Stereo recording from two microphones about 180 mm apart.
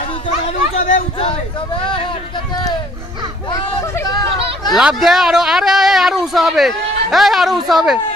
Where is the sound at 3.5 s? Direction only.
20° left (ahead or behind).